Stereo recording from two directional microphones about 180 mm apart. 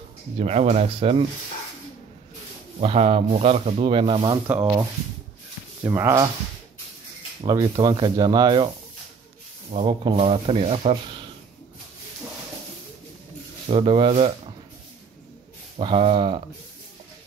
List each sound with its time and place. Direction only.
0.4 s speech: 35° right (ahead or behind)
2.8 s speech: 35° right (ahead or behind)
5.9 s speech: 15° right (ahead or behind)
7.4 s speech: 25° right (ahead or behind)
9.7 s speech: 30° right (ahead or behind)
13.7 s speech: 30° right (ahead or behind)
15.8 s speech: 30° right (ahead or behind)